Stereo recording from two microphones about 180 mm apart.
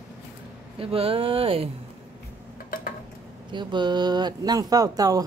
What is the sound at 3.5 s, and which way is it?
Speech, 25° right (ahead or behind).